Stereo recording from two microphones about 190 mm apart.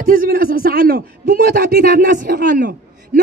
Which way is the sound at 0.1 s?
50° right (ahead or behind).